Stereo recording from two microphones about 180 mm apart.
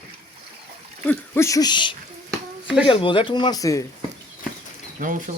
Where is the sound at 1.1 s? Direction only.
15° left (ahead or behind).